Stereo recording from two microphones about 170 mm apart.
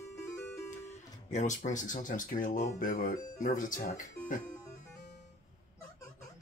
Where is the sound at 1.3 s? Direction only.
45° left (ahead or behind).